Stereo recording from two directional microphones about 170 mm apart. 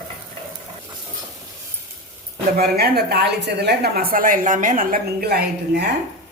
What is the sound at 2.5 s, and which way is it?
A woman's voice, 65° right (ahead or behind).